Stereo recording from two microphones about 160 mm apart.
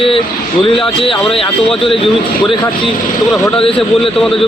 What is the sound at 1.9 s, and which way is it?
Speech, 35° left (ahead or behind).